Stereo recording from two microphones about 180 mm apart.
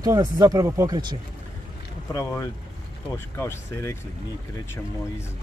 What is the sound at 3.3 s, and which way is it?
Speech, 15° left (ahead or behind).